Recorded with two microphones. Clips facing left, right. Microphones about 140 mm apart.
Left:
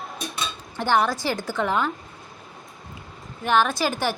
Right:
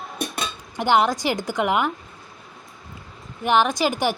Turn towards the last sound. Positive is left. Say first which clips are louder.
# right 3 dB
turn(degrees=-15)  # may be behind; listen again after turning